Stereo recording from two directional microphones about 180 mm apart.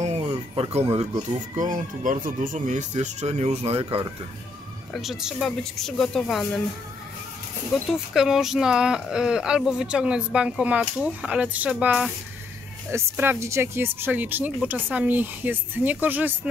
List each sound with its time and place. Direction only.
0.0 s a sound: 35° right (ahead or behind)
1.5 s speech: 45° right (ahead or behind)
4.9 s speech: centre (ahead or behind)
7.9 s speech: centre (ahead or behind)